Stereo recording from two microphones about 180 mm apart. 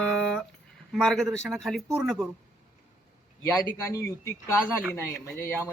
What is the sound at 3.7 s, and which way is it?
Speech, 15° left (ahead or behind).